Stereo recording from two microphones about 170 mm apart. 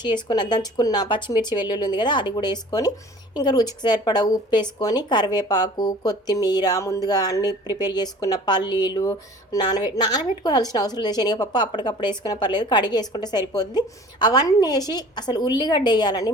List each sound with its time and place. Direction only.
0.0 s a woman's voice: 25° left (ahead or behind)